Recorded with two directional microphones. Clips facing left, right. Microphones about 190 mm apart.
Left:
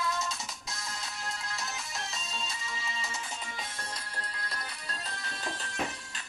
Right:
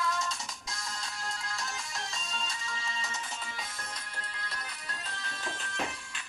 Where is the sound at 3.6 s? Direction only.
35° left (ahead or behind).